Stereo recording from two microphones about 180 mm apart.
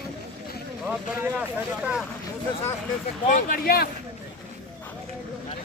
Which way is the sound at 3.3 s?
50° left (ahead or behind).